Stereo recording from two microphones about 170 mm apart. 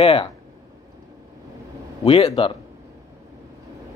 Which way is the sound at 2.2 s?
30° left (ahead or behind).